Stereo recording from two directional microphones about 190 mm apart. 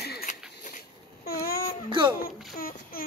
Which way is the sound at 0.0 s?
55° left (ahead or behind).